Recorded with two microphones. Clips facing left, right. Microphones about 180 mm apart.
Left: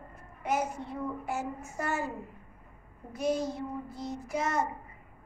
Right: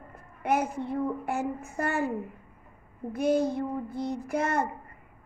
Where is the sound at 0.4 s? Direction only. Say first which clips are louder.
Right 4 dB; 55° right (ahead or behind).